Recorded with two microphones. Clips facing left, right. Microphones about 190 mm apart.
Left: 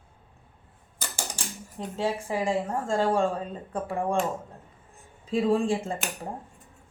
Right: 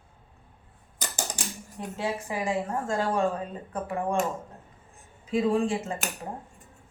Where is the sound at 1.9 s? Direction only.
30° left (ahead or behind).